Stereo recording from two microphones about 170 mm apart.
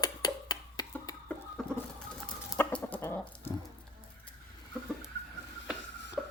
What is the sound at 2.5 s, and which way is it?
Chicken, 15° left (ahead or behind).